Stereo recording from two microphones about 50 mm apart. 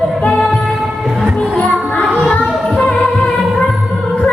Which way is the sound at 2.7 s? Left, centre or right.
Centre.